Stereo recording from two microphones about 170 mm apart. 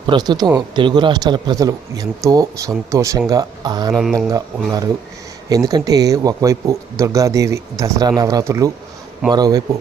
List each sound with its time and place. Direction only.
0.1 s speech: 25° right (ahead or behind)
3.9 s speech: centre (ahead or behind)
4.3 s speech: 20° right (ahead or behind)